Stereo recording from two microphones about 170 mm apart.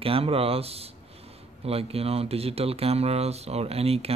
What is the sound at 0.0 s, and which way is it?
Speech, 35° right (ahead or behind).